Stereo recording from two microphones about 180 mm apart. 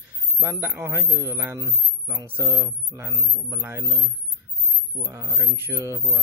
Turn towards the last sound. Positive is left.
turn(degrees=-15)  # may be behind; listen again after turning